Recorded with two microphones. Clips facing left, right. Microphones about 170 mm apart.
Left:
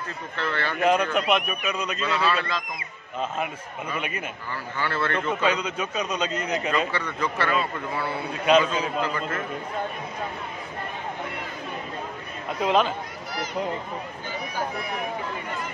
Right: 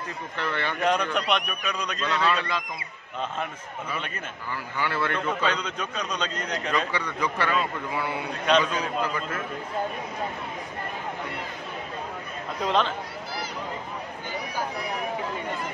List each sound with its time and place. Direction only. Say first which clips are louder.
0.4 s a man's voice: left 1 dB; 15° right (ahead or behind)
0.7 s a man's voice: left 4 dB; 5° left (ahead or behind)
4.7 s a man's voice: left 1 dB; 15° right (ahead or behind)
5.3 s a man's voice: left 3 dB; 10° left (ahead or behind)
6.9 s a man's voice: left 1 dB; 15° right (ahead or behind)
8.3 s a man's voice: left 3 dB; 5° left (ahead or behind)
9.0 s a man's voice: left 1 dB; 5° right (ahead or behind)
12.6 s a man's voice: left 3 dB; 10° left (ahead or behind)